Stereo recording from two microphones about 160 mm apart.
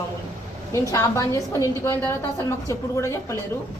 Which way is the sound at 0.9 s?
20° left (ahead or behind).